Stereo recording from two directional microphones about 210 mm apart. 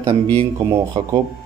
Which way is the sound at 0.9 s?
25° right (ahead or behind).